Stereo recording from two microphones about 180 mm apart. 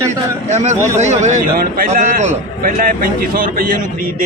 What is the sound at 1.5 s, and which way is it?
Speech, 55° right (ahead or behind).